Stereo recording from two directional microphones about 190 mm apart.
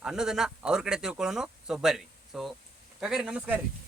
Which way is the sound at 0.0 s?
5° right (ahead or behind).